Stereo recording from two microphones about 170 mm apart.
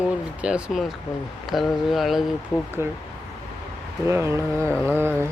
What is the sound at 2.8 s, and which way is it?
Speech, 15° right (ahead or behind).